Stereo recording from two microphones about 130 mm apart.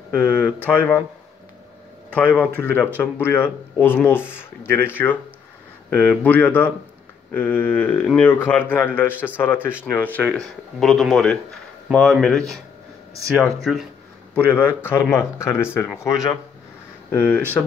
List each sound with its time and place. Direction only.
0.2 s speech: 10° left (ahead or behind)
2.1 s speech: 10° left (ahead or behind)
14.3 s speech: 15° left (ahead or behind)
17.1 s speech: 15° left (ahead or behind)